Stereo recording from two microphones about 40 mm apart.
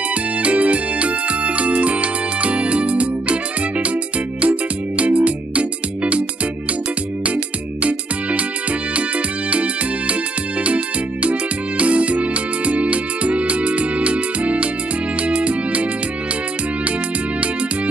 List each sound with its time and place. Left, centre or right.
0.4 s music: right
4.4 s music: right
7.8 s music: right
9.5 s music: right
11.2 s music: right